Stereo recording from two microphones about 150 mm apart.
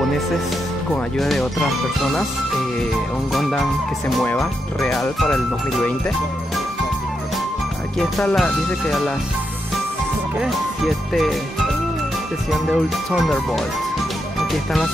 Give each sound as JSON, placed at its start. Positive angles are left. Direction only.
{"t": 1.1, "sound": "speech", "side_deg": 0}
{"t": 3.3, "sound": "speech", "side_deg": 0}
{"t": 4.7, "sound": "speech", "side_deg": 0}
{"t": 8.0, "sound": "speech", "side_deg": 5}
{"t": 12.4, "sound": "speech", "side_deg": 0}
{"t": 14.5, "sound": "speech", "side_deg": 0}